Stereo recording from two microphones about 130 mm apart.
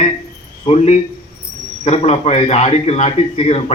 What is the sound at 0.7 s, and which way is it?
A man's voice, 55° left (ahead or behind).